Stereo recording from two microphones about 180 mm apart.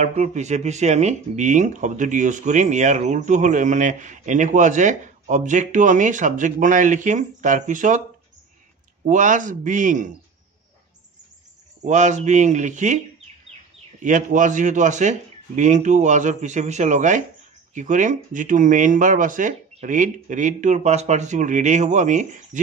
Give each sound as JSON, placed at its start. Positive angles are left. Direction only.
{"t": 0.0, "sound": "speech", "side_deg": -40}
{"t": 9.0, "sound": "speech", "side_deg": -45}
{"t": 11.8, "sound": "speech", "side_deg": -40}
{"t": 14.0, "sound": "speech", "side_deg": -45}